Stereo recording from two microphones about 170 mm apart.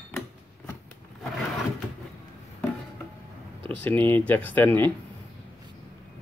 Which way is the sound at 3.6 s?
10° left (ahead or behind).